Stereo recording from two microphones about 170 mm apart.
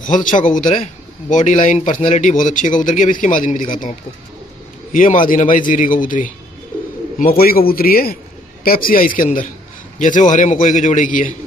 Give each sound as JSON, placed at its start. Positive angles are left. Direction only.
{"t": 0.0, "sound": "a man's voice", "side_deg": 50}
{"t": 4.9, "sound": "a man's voice", "side_deg": 50}